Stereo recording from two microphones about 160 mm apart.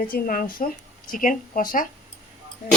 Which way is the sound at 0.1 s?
60° left (ahead or behind).